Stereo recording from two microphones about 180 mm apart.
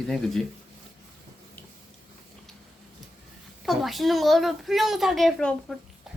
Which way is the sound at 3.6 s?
Centre (ahead or behind).